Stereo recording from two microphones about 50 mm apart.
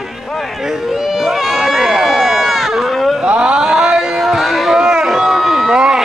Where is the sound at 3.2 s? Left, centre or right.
Centre.